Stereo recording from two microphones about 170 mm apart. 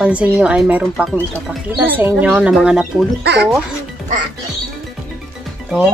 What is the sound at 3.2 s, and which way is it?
Speech, 80° right.